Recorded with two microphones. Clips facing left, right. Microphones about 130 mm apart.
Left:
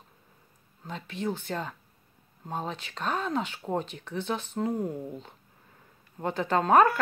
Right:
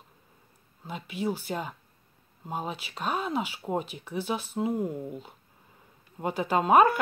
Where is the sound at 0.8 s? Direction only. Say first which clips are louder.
Right 1 dB; 10° right (ahead or behind).